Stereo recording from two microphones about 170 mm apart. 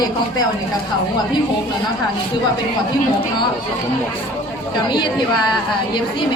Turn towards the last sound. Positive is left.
turn(degrees=25)  # may be behind; listen again after turning